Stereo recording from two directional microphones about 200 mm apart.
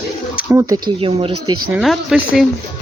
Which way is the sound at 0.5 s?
20° right (ahead or behind).